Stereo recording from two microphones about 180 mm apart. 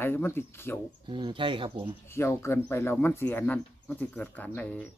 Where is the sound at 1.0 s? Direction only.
25° right (ahead or behind).